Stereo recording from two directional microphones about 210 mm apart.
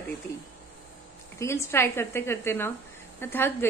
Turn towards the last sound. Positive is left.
turn(degrees=10)  # may be behind; listen again after turning